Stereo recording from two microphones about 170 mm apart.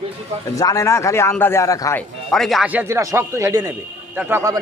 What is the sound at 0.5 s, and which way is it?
Speech, 20° left (ahead or behind).